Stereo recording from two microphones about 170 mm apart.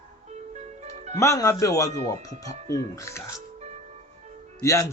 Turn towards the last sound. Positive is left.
turn(degrees=20)  # may be behind; listen again after turning